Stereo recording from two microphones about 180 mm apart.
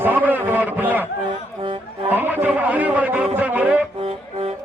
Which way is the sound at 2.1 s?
10° right (ahead or behind).